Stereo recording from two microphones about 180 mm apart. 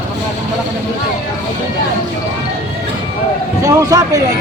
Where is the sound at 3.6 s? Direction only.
20° right (ahead or behind).